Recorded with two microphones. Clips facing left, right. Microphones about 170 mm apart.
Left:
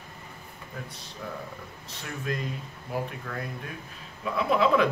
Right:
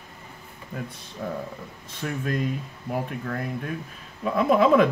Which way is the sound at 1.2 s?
45° right (ahead or behind).